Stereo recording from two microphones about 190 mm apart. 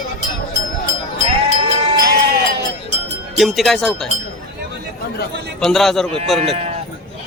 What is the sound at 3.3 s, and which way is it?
Speech, centre (ahead or behind).